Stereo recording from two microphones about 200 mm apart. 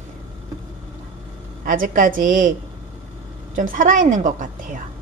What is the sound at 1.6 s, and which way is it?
Speech, 45° right (ahead or behind).